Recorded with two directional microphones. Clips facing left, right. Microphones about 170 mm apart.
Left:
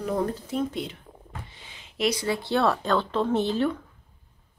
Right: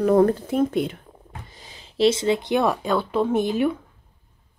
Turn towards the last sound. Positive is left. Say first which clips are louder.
# right 3 dB
turn(degrees=-15)  # may be behind; listen again after turning